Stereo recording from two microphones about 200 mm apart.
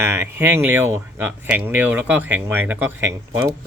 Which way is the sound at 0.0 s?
10° right (ahead or behind).